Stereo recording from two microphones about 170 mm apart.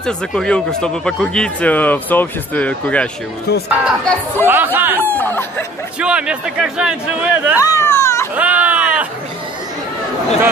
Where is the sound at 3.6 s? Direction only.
10° right (ahead or behind).